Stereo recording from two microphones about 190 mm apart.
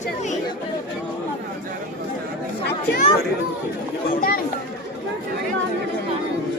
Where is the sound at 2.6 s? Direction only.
60° left (ahead or behind).